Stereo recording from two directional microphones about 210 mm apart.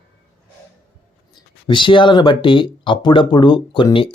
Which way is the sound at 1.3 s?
20° left (ahead or behind).